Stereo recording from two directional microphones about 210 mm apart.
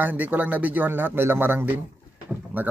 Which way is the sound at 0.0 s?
10° right (ahead or behind).